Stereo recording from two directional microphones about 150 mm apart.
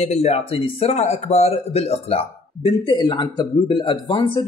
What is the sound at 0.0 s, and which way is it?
Speech, 45° left (ahead or behind).